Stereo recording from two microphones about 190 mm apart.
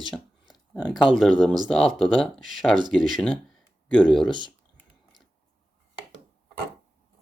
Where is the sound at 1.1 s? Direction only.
Centre (ahead or behind).